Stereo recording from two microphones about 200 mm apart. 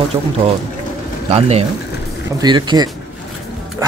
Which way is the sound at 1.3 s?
30° right (ahead or behind).